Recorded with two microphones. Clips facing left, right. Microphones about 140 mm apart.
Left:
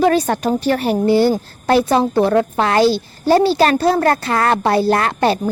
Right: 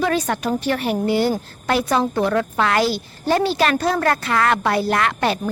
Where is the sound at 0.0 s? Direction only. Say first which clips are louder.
Left 6 dB; 35° left (ahead or behind).